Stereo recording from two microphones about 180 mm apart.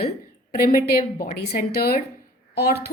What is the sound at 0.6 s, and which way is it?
A woman's voice, 55° left (ahead or behind).